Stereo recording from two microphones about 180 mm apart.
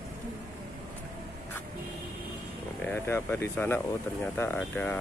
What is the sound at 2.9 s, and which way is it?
Speech, 10° left (ahead or behind).